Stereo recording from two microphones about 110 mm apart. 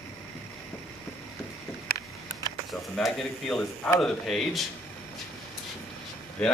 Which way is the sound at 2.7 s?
Centre (ahead or behind).